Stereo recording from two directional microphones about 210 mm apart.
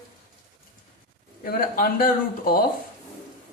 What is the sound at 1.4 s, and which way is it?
Speech, 45° left (ahead or behind).